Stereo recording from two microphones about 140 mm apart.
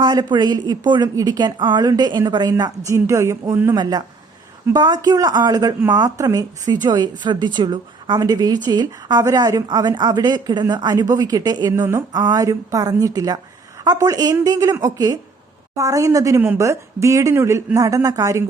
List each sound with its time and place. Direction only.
0.0 s a woman's voice: 30° right (ahead or behind)
3.8 s a woman's voice: 30° right (ahead or behind)